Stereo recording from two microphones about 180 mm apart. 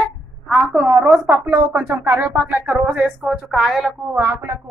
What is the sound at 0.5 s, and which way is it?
A woman's voice, 10° right (ahead or behind).